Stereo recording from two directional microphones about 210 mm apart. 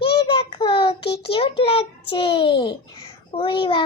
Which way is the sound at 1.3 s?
25° left (ahead or behind).